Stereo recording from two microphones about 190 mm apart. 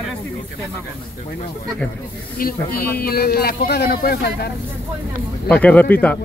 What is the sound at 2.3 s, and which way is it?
Speech, 50° left (ahead or behind).